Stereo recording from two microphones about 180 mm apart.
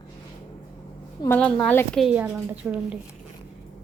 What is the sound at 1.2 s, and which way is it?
Speech, 10° left (ahead or behind).